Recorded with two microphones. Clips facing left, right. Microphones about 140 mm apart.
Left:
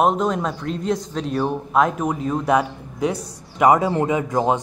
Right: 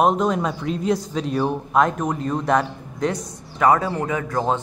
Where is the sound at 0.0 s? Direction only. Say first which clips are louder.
Even; centre (ahead or behind).